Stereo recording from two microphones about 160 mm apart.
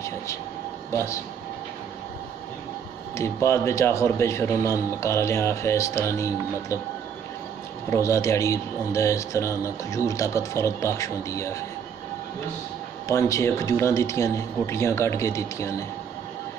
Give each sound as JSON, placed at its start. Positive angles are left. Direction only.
{"t": 0.9, "sound": "a man's voice", "side_deg": 20}
{"t": 3.2, "sound": "a man's voice", "side_deg": 20}
{"t": 7.9, "sound": "a man's voice", "side_deg": 20}
{"t": 13.1, "sound": "a man's voice", "side_deg": 20}